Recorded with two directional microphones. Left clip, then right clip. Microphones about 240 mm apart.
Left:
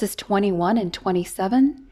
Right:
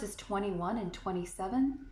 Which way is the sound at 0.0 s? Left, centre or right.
Left.